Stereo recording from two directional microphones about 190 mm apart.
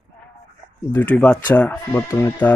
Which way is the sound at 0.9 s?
10° left (ahead or behind).